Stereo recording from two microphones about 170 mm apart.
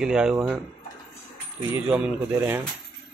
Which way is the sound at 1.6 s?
5° right (ahead or behind).